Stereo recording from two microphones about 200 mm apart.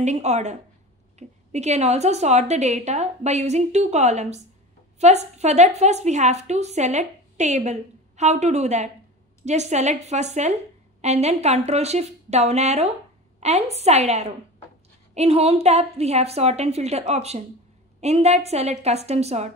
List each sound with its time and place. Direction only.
0.0 s a woman's voice: 35° right (ahead or behind)